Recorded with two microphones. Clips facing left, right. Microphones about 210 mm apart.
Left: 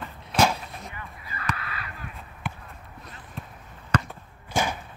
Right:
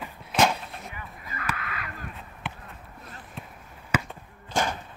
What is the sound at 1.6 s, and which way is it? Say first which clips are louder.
Crow: right 1 dB; 30° left (ahead or behind).